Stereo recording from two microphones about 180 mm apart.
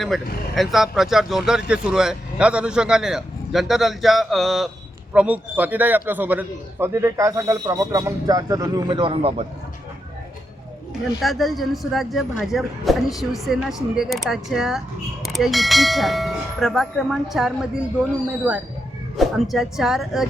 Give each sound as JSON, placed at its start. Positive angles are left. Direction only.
{"t": 0.0, "sound": "a man's voice", "side_deg": 0}
{"t": 11.2, "sound": "a man's voice", "side_deg": 0}